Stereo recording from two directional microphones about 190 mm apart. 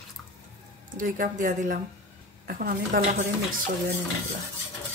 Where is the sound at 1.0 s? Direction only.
45° right (ahead or behind).